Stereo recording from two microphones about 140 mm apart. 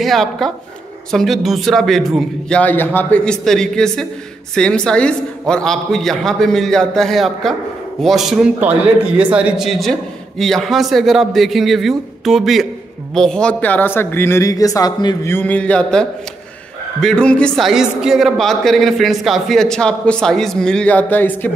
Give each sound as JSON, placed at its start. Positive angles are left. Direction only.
{"t": 0.0, "sound": "a man's voice", "side_deg": 0}
{"t": 15.2, "sound": "a man's voice", "side_deg": 15}